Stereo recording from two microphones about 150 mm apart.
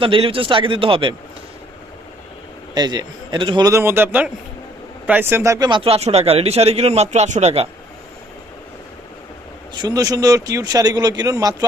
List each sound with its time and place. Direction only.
0.0 s a man's voice: 35° right (ahead or behind)
2.7 s speech: 30° right (ahead or behind)
3.7 s speech: 15° right (ahead or behind); by 7.7 s 45° right (ahead or behind)
9.7 s speech: 25° right (ahead or behind)